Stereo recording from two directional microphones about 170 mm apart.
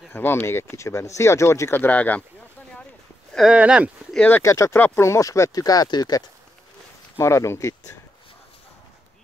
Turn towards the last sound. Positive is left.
turn(degrees=15)  # may be behind; listen again after turning